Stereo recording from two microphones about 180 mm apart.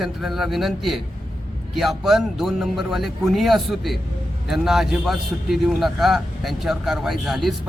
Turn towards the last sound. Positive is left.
turn(degrees=0)  # may be behind; listen again after turning